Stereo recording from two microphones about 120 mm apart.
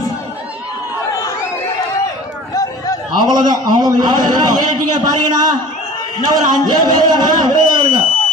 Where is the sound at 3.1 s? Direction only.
35° right (ahead or behind).